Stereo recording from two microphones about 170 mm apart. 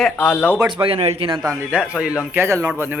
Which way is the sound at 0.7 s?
30° right (ahead or behind).